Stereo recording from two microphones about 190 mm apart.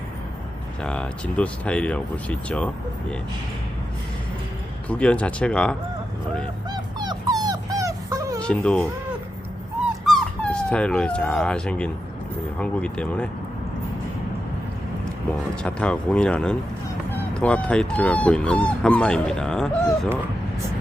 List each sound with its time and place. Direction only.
0.8 s speech: 5° left (ahead or behind)
4.9 s speech: 5° left (ahead or behind)
6.7 s dog: 20° right (ahead or behind)
8.4 s speech: 5° left (ahead or behind)
10.1 s speech: 5° left (ahead or behind)
15.6 s speech: 5° left (ahead or behind)